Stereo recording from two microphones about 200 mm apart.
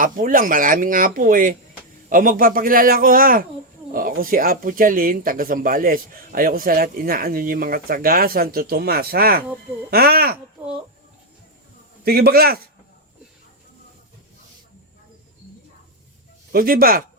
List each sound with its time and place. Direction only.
0.0 s speech: 45° right (ahead or behind)
12.0 s speech: 50° right (ahead or behind)
16.5 s speech: 45° right (ahead or behind)